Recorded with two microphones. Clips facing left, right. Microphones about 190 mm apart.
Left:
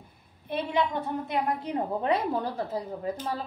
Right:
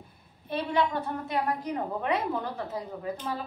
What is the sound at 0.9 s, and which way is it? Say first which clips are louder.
A woman's voice: left 1 dB; 20° left (ahead or behind).